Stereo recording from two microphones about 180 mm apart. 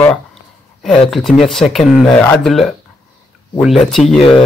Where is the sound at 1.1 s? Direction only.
Centre (ahead or behind).